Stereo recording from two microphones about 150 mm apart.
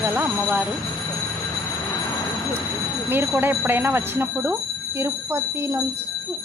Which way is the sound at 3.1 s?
15° right (ahead or behind).